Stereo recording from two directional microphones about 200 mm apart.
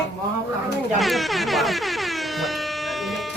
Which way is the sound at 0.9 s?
Centre (ahead or behind).